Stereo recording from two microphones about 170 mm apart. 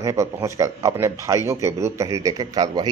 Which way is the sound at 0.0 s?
20° right (ahead or behind).